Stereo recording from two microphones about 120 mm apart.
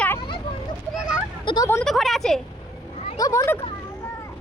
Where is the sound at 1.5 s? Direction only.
45° left (ahead or behind).